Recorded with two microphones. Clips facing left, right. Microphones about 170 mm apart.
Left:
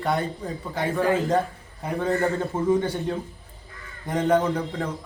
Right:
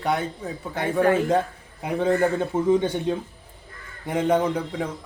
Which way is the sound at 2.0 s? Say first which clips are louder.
Right 3 dB; 15° right (ahead or behind).